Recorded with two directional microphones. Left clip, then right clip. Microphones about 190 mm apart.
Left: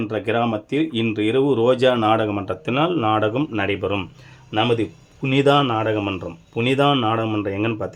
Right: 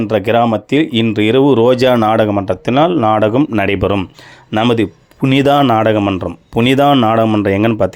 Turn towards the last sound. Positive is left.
turn(degrees=-40)  # may be behind; listen again after turning